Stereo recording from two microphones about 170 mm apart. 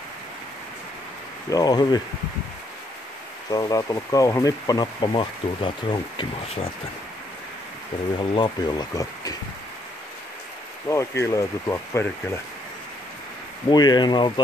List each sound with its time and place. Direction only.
1.5 s speech: 25° left (ahead or behind)
3.5 s speech: 20° left (ahead or behind)
8.2 s speech: 25° left (ahead or behind)
10.9 s speech: 15° left (ahead or behind)
13.7 s speech: 25° left (ahead or behind)